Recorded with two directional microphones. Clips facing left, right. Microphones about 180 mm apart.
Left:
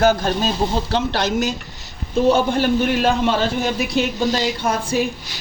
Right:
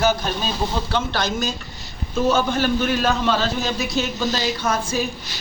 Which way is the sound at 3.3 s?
55° left (ahead or behind).